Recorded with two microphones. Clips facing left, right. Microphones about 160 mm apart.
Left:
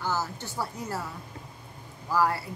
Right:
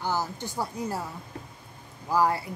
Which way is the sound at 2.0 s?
15° right (ahead or behind).